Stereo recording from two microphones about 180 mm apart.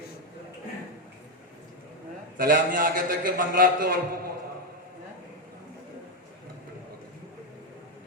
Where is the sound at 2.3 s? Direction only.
50° right (ahead or behind).